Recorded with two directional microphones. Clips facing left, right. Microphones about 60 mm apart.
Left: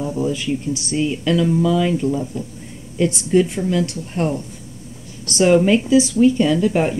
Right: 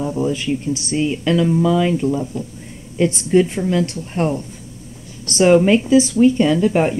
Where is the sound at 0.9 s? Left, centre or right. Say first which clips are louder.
Right 1 dB; right.